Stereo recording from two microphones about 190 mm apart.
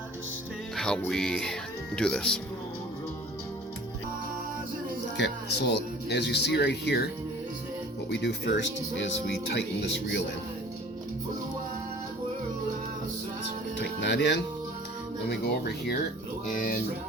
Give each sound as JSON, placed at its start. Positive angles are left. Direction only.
{"t": 0.8, "sound": "speech", "side_deg": 5}
{"t": 5.1, "sound": "speech", "side_deg": 65}
{"t": 8.1, "sound": "speech", "side_deg": 65}
{"t": 13.7, "sound": "music", "side_deg": 70}
{"t": 15.3, "sound": "speech", "side_deg": 60}
{"t": 16.6, "sound": "music", "side_deg": 50}